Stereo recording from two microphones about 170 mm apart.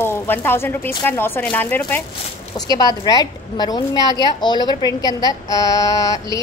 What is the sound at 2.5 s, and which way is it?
A woman's voice, 20° left (ahead or behind).